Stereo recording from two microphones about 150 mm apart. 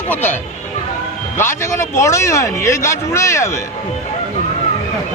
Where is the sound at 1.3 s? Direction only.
15° left (ahead or behind).